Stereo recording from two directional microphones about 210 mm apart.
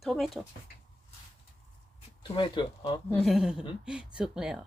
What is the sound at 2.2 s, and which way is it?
Speech, 25° left (ahead or behind).